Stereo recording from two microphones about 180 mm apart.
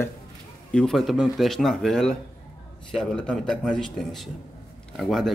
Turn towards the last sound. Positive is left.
turn(degrees=0)  # may be behind; listen again after turning